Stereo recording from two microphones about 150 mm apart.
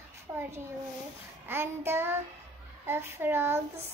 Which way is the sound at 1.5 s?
15° right (ahead or behind).